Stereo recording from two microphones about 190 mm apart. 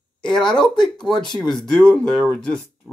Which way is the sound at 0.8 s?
5° left (ahead or behind).